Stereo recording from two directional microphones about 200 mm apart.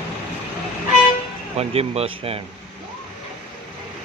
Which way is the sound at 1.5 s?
30° right (ahead or behind).